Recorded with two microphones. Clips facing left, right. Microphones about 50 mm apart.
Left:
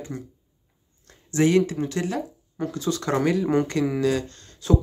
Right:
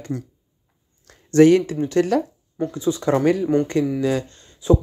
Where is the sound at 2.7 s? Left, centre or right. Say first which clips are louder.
Right 5 dB; centre.